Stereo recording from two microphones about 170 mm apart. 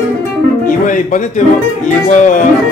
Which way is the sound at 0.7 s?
50° left (ahead or behind).